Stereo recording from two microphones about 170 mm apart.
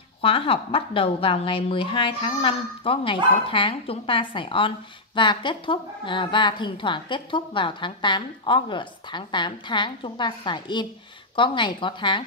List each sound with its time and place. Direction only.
0.2 s a woman's voice: 30° left (ahead or behind)